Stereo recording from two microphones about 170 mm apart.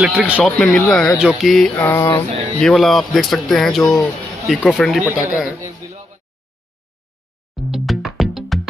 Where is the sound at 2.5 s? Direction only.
Centre (ahead or behind).